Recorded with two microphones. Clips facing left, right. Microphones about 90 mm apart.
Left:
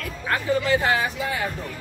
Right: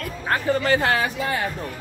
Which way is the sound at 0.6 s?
60° right (ahead or behind).